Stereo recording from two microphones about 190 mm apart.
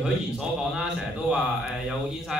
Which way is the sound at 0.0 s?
5° right (ahead or behind).